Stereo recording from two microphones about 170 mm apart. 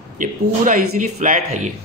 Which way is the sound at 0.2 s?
50° right (ahead or behind).